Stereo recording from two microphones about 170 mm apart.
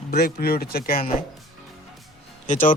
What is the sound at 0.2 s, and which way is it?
Speech, 60° left (ahead or behind).